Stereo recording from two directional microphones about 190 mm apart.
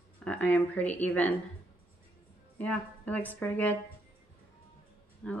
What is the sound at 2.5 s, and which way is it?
A woman's voice, 10° left (ahead or behind).